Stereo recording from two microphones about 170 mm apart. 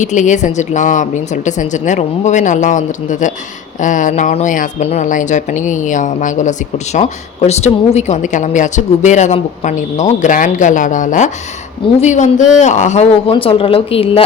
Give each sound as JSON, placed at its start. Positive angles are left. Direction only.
{"t": 0.0, "sound": "a woman's voice", "side_deg": 45}